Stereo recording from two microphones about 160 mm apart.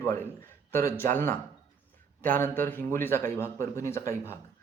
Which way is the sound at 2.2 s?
10° left (ahead or behind).